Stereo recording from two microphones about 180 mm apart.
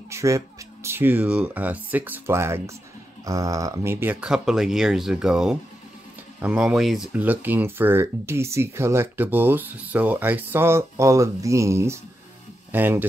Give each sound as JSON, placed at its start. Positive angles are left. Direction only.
{"t": 0.1, "sound": "music", "side_deg": -15}
{"t": 0.8, "sound": "speech", "side_deg": -10}